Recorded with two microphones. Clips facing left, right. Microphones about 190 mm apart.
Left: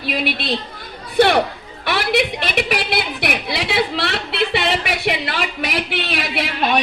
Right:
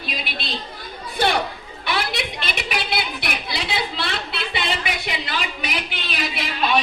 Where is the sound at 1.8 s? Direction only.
70° left (ahead or behind).